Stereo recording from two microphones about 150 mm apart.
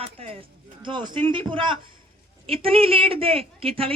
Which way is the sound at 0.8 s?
30° right (ahead or behind).